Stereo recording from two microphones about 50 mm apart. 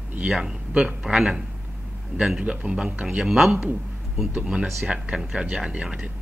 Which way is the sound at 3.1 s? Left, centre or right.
Centre.